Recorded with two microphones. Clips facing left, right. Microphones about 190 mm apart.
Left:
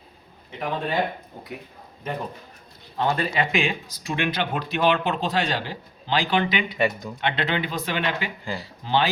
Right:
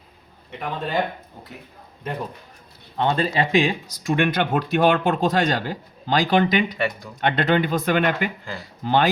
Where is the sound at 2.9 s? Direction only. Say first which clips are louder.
Right 3 dB; 25° right (ahead or behind).